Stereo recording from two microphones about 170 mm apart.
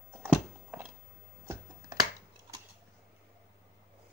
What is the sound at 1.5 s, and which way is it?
Finger snapping, 20° right (ahead or behind).